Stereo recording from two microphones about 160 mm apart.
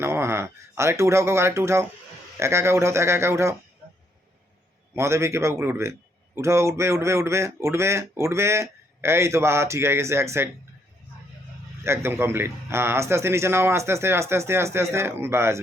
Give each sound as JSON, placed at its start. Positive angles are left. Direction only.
{"t": 0.0, "sound": "speech", "side_deg": -15}
{"t": 4.9, "sound": "speech", "side_deg": -15}
{"t": 11.8, "sound": "speech", "side_deg": -15}